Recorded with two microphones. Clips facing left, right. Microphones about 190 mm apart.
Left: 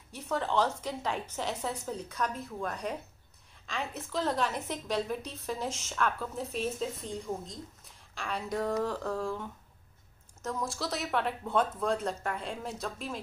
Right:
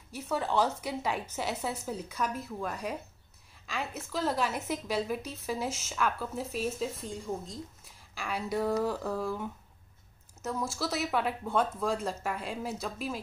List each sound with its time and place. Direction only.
0.1 s a woman's voice: 10° right (ahead or behind)